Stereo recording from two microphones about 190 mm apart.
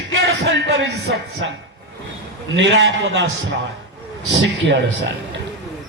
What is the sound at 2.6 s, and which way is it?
Speech, 80° right.